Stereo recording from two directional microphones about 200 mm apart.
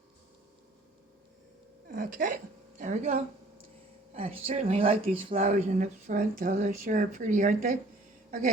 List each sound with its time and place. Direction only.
1.9 s speech: 40° right (ahead or behind)